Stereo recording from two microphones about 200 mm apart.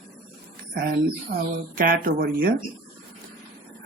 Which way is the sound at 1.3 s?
50° right (ahead or behind).